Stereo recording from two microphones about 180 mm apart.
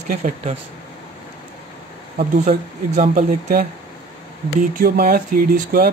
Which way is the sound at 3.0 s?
55° right (ahead or behind).